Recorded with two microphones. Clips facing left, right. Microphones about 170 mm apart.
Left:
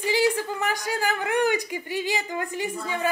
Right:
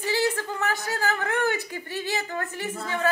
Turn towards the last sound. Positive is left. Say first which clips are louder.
# even
turn(degrees=15)  # may be behind; listen again after turning